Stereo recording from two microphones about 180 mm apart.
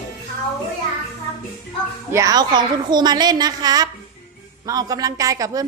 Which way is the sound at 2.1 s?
20° right (ahead or behind).